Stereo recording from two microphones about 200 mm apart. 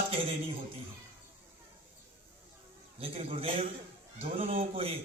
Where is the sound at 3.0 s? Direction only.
30° right (ahead or behind).